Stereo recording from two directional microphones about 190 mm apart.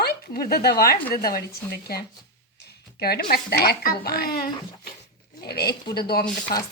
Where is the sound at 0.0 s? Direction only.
55° left (ahead or behind).